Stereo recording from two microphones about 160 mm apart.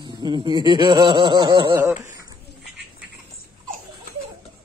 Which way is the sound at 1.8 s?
20° right (ahead or behind).